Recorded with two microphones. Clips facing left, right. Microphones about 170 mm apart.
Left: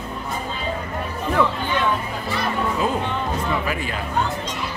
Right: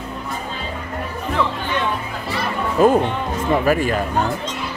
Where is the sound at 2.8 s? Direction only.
50° right (ahead or behind).